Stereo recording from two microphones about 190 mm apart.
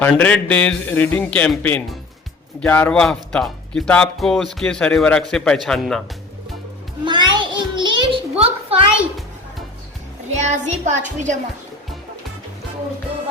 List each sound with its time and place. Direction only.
0.0 s a man's voice: 10° left (ahead or behind)
7.0 s a sound: 25° right (ahead or behind)
10.4 s child singing: 35° right (ahead or behind)